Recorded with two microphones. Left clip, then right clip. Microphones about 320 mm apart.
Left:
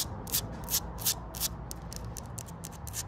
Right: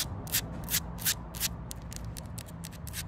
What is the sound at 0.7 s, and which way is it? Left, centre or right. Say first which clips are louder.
Shuffle: left 1 dB; centre.